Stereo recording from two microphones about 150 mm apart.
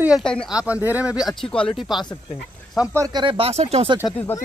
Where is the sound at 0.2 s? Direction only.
5° left (ahead or behind).